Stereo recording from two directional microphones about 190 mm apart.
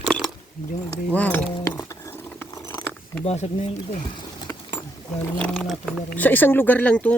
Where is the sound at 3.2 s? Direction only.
35° left (ahead or behind).